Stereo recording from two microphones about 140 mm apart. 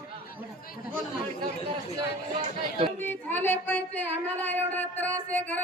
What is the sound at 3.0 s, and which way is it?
Speech, 15° left (ahead or behind).